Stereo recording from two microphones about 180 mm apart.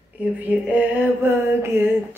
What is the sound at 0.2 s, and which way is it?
Mantra, 10° right (ahead or behind).